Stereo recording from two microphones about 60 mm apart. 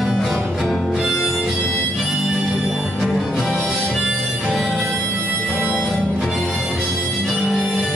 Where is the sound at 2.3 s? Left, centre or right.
Centre.